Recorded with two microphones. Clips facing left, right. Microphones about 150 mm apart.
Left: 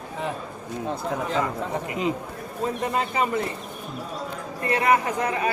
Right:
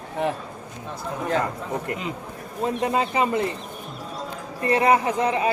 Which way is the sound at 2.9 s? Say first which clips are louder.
Right 2 dB; 25° right (ahead or behind).